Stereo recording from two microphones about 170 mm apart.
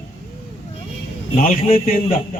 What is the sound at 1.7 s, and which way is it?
Speech, 55° left (ahead or behind).